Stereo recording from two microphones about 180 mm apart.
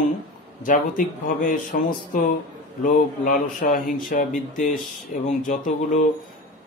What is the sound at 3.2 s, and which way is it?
Speech, 55° left (ahead or behind).